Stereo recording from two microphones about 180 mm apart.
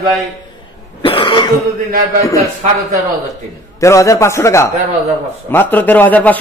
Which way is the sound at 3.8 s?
15° left (ahead or behind).